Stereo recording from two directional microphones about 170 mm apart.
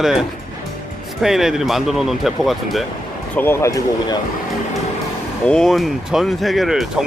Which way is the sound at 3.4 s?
15° left (ahead or behind).